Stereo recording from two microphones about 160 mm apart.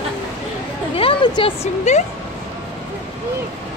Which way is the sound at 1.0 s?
35° left (ahead or behind).